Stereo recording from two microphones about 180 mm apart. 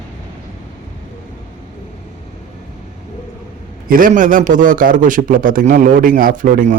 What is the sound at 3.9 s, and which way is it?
Speech, 50° right (ahead or behind).